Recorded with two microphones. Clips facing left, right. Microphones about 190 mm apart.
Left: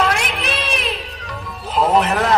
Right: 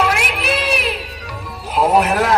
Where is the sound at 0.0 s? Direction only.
5° right (ahead or behind).